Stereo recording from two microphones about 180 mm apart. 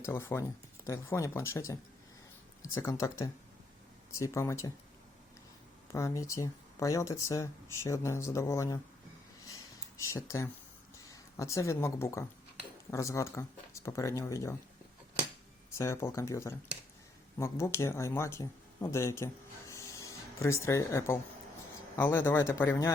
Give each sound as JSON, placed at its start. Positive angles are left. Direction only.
{"t": 0.0, "sound": "speech", "side_deg": 15}
{"t": 5.9, "sound": "speech", "side_deg": 15}
{"t": 10.0, "sound": "speech", "side_deg": 15}
{"t": 15.7, "sound": "speech", "side_deg": 15}